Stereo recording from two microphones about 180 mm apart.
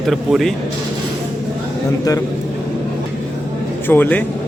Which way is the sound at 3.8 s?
10° left (ahead or behind).